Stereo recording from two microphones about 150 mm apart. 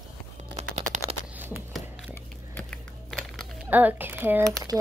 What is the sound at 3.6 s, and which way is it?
Speech, 10° right (ahead or behind).